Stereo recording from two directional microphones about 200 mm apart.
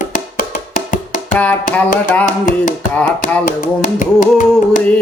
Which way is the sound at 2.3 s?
40° left (ahead or behind).